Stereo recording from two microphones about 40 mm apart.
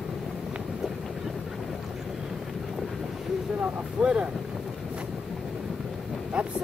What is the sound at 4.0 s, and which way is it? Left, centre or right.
Boat, right.